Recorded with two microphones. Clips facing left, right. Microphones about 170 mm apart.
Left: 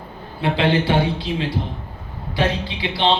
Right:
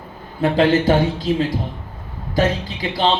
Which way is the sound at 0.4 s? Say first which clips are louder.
Right 4 dB; 45° right (ahead or behind).